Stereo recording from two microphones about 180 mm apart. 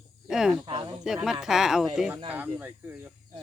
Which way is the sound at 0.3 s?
5° right (ahead or behind).